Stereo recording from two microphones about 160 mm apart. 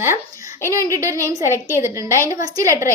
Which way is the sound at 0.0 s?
15° right (ahead or behind).